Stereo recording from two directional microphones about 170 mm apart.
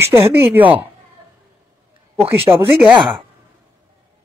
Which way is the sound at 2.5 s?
10° right (ahead or behind).